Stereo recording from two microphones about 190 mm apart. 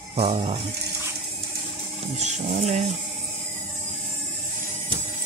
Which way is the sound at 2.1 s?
35° right (ahead or behind).